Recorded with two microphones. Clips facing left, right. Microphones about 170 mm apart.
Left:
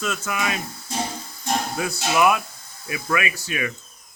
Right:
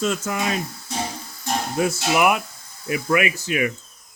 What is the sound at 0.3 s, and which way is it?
Speech, 30° right (ahead or behind).